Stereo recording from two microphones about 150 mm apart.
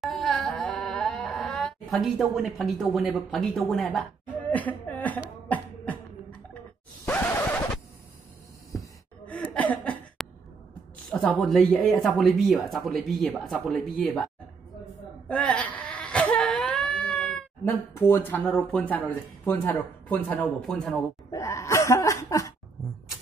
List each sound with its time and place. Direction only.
0.0 s a sound: centre (ahead or behind)
7.1 s scratch: 10° left (ahead or behind)
8.7 s gasp: 10° left (ahead or behind)
9.5 s chuckle: 10° left (ahead or behind)
11.1 s speech: 5° left (ahead or behind)
15.2 s whimper: 10° left (ahead or behind)
17.9 s speech: 15° left (ahead or behind)
21.3 s a sound: 20° left (ahead or behind)